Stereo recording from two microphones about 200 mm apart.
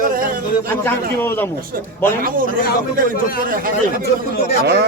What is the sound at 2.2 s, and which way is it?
Speech, 45° right (ahead or behind).